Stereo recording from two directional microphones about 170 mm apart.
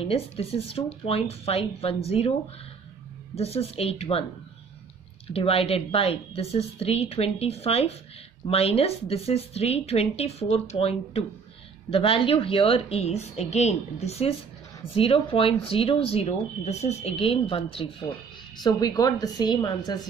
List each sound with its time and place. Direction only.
0.0 s speech: 35° left (ahead or behind)
3.3 s speech: 35° left (ahead or behind)
5.3 s a woman's voice: 35° left (ahead or behind)